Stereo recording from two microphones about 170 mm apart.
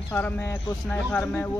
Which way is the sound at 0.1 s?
15° left (ahead or behind).